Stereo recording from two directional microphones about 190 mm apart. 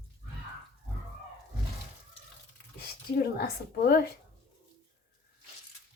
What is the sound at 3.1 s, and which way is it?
Speech, 55° left (ahead or behind).